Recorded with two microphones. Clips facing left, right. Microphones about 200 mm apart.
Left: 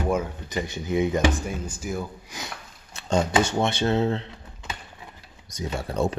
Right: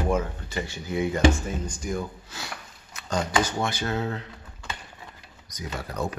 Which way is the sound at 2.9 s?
25° left (ahead or behind).